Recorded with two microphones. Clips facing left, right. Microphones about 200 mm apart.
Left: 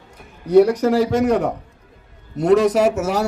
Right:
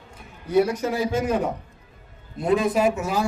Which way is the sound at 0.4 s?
70° left (ahead or behind).